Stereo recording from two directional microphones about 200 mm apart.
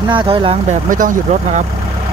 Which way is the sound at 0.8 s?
40° right (ahead or behind).